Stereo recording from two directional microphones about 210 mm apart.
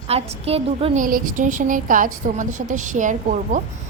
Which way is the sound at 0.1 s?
30° right (ahead or behind).